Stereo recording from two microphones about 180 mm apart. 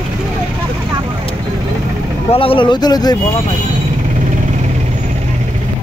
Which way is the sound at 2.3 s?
30° left (ahead or behind).